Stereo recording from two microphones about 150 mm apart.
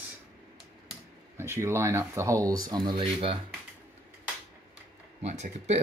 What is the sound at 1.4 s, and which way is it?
Speech, 15° right (ahead or behind).